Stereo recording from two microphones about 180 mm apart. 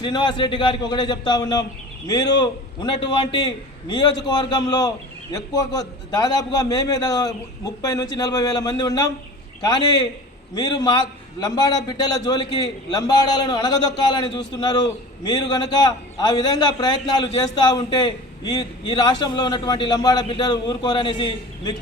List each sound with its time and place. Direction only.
0.0 s a man's voice: 25° left (ahead or behind)